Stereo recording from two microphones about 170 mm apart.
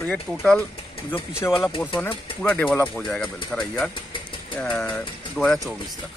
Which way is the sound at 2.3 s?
10° left (ahead or behind).